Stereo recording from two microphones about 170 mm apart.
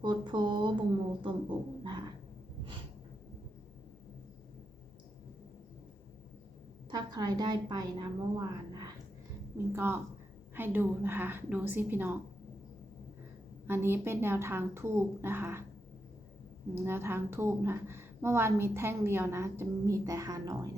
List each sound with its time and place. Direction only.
0.0 s speech: 25° right (ahead or behind)
6.9 s a woman's voice: 25° right (ahead or behind)
13.7 s a woman's voice: 15° right (ahead or behind)
16.7 s a woman's voice: 15° right (ahead or behind)